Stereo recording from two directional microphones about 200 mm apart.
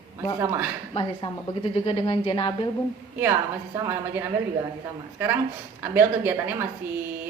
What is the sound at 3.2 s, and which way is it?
A woman's voice, 15° right (ahead or behind).